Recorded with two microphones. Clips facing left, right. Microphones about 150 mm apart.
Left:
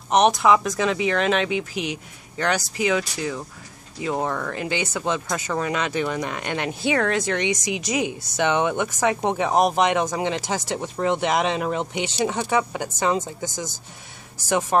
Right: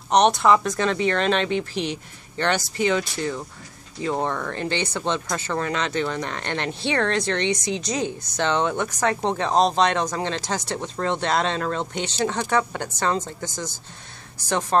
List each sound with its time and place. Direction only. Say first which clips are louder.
0.1 s speech: even; 5° left (ahead or behind)
14.7 s speech: even; 10° left (ahead or behind)